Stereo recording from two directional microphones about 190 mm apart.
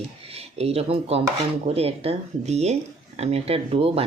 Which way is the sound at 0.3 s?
30° right (ahead or behind).